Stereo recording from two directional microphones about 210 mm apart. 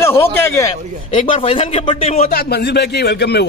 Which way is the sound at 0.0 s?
10° left (ahead or behind).